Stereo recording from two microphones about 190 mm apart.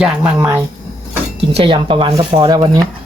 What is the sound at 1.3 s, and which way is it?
Speech, 30° right (ahead or behind).